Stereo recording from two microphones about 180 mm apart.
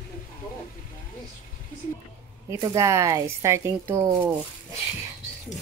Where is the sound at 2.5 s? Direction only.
20° right (ahead or behind).